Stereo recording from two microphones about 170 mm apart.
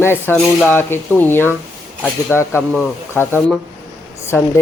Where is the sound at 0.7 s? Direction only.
10° left (ahead or behind).